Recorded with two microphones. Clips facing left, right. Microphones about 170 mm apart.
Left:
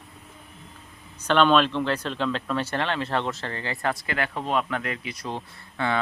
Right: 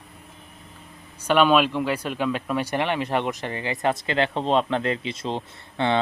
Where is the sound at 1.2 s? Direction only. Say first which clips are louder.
Right 1 dB; 10° right (ahead or behind).